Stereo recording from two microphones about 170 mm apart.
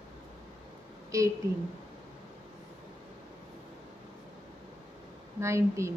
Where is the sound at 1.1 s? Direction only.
20° right (ahead or behind).